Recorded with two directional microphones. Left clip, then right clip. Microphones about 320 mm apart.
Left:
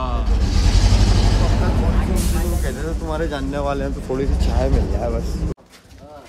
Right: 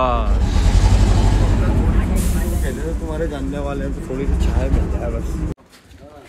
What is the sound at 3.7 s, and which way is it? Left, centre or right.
Speech, left.